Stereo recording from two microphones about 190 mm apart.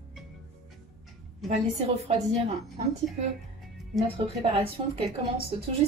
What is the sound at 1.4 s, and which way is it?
Speech, 35° right (ahead or behind).